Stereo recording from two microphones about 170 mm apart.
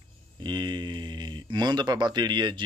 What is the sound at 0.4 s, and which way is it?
Speech, 25° right (ahead or behind).